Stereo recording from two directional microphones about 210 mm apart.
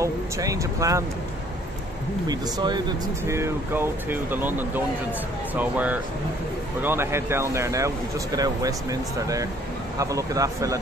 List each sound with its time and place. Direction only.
0.0 s speech: 15° right (ahead or behind)
2.2 s speech: 20° right (ahead or behind)